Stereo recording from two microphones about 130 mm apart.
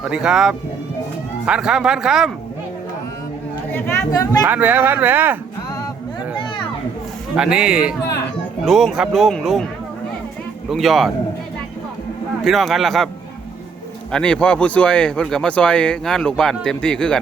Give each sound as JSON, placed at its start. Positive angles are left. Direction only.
{"t": 0.0, "sound": "a man's voice", "side_deg": -5}
{"t": 3.7, "sound": "speech", "side_deg": 15}
{"t": 4.4, "sound": "speech", "side_deg": -15}
{"t": 7.3, "sound": "a man's voice", "side_deg": -5}
{"t": 10.7, "sound": "a man's voice", "side_deg": 0}
{"t": 12.5, "sound": "a man's voice", "side_deg": 0}
{"t": 14.1, "sound": "speech", "side_deg": 5}